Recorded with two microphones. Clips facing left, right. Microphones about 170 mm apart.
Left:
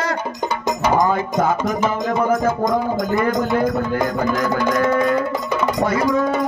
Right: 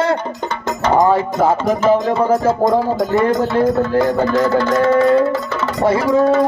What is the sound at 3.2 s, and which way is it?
Speech, 15° left (ahead or behind).